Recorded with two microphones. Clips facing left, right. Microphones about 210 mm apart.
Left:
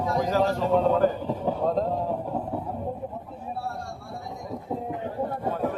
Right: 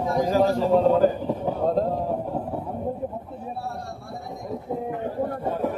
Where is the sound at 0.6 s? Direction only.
35° right (ahead or behind).